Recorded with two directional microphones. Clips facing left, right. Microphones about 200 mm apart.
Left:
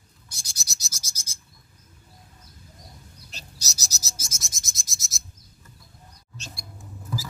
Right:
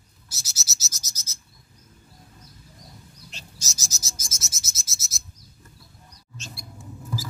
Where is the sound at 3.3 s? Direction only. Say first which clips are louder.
Left 1 dB; 35° left (ahead or behind).